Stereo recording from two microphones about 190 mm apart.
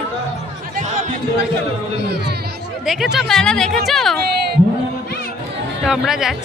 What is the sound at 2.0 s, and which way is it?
Music, 60° right (ahead or behind).